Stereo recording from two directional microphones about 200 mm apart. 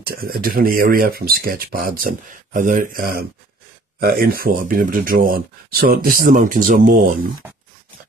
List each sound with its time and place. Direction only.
0.0 s speech: 50° right (ahead or behind)
7.4 s grunt: 10° right (ahead or behind)